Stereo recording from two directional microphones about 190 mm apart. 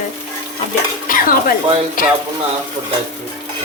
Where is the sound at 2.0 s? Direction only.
45° left (ahead or behind).